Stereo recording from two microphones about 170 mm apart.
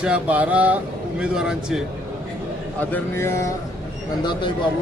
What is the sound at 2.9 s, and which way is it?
Speech, 10° left (ahead or behind).